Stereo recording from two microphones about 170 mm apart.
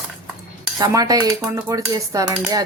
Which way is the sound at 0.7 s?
20° right (ahead or behind).